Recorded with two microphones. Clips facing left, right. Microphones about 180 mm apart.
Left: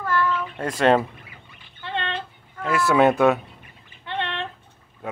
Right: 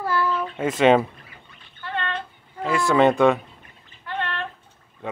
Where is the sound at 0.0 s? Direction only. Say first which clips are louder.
Even; 10° right (ahead or behind).